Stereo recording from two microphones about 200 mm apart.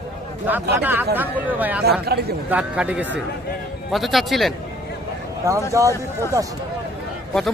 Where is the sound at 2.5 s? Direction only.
5° right (ahead or behind).